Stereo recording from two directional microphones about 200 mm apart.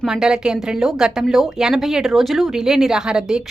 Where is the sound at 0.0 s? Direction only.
5° right (ahead or behind).